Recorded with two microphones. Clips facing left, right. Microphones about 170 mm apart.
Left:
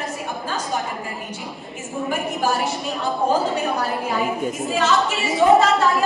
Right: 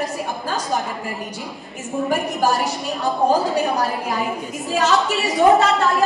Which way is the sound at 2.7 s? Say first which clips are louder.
Right 1 dB; 35° right (ahead or behind).